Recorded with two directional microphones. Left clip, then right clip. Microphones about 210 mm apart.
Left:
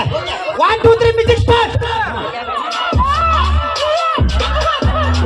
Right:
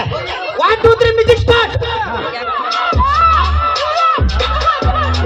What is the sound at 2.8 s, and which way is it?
Music, 30° right (ahead or behind).